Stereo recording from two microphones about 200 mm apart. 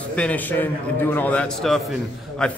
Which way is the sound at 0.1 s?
5° left (ahead or behind).